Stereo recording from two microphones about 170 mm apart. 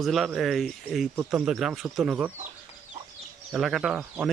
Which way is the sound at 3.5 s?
Centre (ahead or behind).